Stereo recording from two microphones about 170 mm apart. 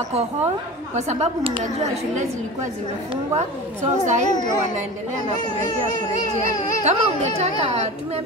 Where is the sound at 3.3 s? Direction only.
45° right (ahead or behind).